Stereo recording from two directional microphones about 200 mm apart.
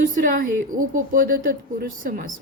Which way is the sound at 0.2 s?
45° right (ahead or behind).